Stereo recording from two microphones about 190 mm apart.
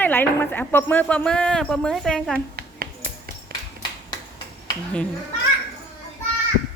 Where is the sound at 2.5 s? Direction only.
50° right (ahead or behind).